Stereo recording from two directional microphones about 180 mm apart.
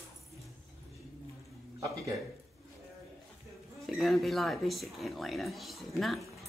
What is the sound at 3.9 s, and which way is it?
A woman's voice, centre (ahead or behind).